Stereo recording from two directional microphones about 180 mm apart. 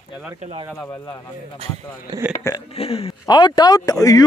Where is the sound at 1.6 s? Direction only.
35° right (ahead or behind).